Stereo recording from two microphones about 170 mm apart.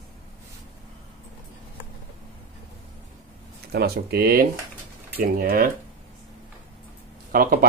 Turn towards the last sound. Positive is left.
turn(degrees=-60)  # may be behind; listen again after turning